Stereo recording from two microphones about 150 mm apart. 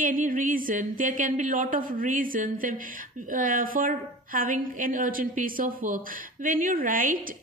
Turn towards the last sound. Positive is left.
turn(degrees=-65)  # may be behind; listen again after turning